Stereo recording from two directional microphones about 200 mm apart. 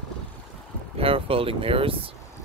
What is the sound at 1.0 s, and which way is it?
Speech, 30° right (ahead or behind).